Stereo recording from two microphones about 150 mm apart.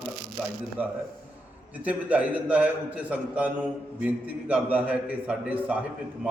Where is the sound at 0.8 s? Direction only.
10° right (ahead or behind).